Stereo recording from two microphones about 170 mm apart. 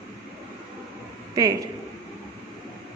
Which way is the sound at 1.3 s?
20° right (ahead or behind).